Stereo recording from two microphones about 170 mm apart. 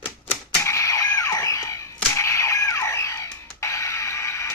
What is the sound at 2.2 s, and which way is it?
Music, 15° left (ahead or behind).